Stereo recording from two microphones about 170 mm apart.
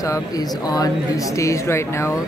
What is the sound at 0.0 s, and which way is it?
Speech, 20° left (ahead or behind).